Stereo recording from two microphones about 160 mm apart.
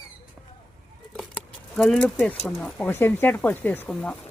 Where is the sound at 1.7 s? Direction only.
5° left (ahead or behind).